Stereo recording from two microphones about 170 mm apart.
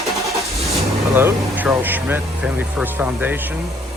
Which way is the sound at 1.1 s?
10° right (ahead or behind).